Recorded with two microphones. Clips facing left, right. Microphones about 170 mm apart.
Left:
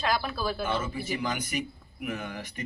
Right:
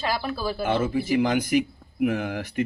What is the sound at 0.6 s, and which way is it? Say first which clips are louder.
Speech: right 7 dB; 70° right (ahead or behind).